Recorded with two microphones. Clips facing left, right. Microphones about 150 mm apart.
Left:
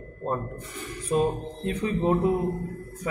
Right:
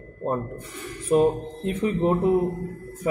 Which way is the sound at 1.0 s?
20° right (ahead or behind).